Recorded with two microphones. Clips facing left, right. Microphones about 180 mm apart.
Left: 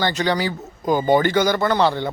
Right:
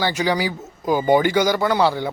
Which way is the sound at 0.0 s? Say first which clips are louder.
Even; 10° right (ahead or behind).